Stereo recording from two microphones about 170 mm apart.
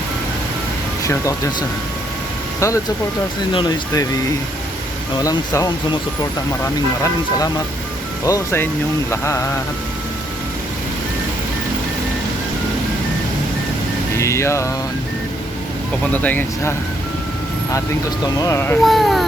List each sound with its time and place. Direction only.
1.0 s speech: 20° left (ahead or behind)
2.6 s speech: 20° left (ahead or behind)
3.5 s speech: 30° left (ahead or behind)
5.2 s speech: 20° left (ahead or behind)
7.0 s speech: 20° left (ahead or behind)
14.2 s speech: 15° left (ahead or behind)
16.1 s speech: 10° left (ahead or behind)
18.3 s speech: 20° left (ahead or behind)
18.8 s speech: centre (ahead or behind)